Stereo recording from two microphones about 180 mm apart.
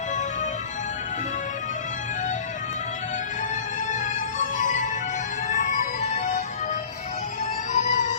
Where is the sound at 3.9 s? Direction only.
45° left (ahead or behind).